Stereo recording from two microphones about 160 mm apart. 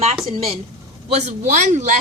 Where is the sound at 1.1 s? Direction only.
50° right (ahead or behind).